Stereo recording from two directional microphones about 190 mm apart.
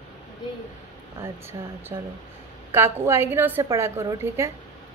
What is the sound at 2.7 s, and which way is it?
Speech, 15° right (ahead or behind).